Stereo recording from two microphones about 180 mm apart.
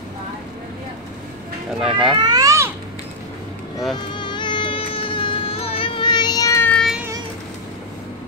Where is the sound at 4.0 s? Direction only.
25° left (ahead or behind); by 6.9 s 5° left (ahead or behind).